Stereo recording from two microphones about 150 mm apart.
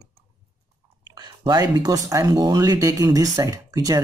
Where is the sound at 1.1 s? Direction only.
25° right (ahead or behind).